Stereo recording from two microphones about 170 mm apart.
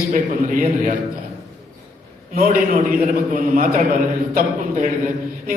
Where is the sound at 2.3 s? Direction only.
55° right (ahead or behind).